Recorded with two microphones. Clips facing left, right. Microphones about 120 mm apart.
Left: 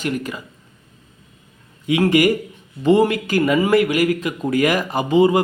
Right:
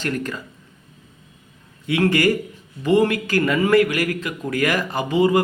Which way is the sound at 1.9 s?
20° left (ahead or behind).